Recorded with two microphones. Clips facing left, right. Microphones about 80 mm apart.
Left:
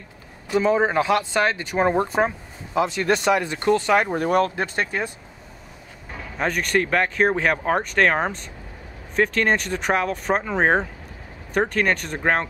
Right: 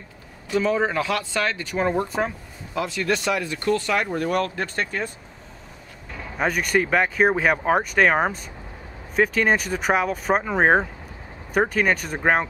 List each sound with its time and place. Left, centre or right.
0.6 s speech: left
6.3 s speech: centre